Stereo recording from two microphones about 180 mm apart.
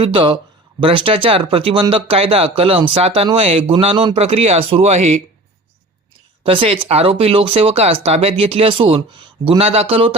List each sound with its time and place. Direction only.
0.0 s speech: 30° right (ahead or behind)
6.4 s speech: 30° right (ahead or behind)